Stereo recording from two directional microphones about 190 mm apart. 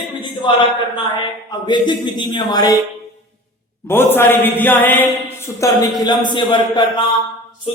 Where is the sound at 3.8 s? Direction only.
10° left (ahead or behind).